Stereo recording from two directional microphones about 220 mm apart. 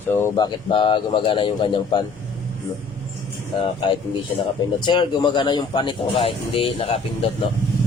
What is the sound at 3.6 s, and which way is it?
Speech, 20° left (ahead or behind).